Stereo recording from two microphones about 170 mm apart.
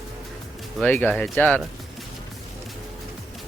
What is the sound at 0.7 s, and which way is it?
Speech, 10° left (ahead or behind).